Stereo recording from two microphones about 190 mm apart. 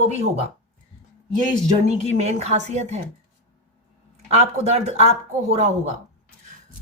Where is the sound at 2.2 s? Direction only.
35° right (ahead or behind).